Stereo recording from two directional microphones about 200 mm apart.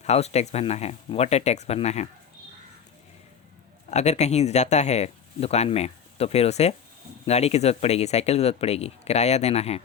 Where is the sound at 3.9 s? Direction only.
35° left (ahead or behind).